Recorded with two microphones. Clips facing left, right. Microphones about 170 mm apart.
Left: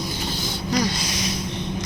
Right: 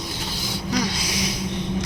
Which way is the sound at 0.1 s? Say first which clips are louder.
Left 2 dB; 10° right (ahead or behind).